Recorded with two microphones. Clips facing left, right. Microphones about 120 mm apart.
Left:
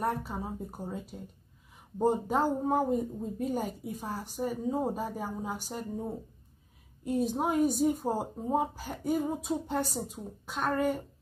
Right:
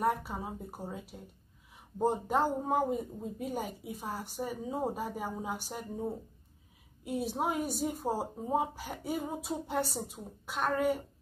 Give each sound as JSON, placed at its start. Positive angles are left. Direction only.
{"t": 0.0, "sound": "speech", "side_deg": -10}